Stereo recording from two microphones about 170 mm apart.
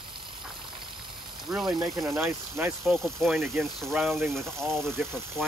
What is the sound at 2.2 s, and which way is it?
Speech, 15° right (ahead or behind).